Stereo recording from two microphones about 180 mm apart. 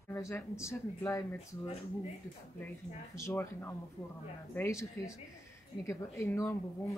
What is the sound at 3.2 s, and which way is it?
A woman's voice, 15° left (ahead or behind).